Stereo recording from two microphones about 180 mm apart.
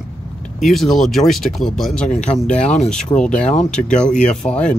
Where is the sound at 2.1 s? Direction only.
40° left (ahead or behind).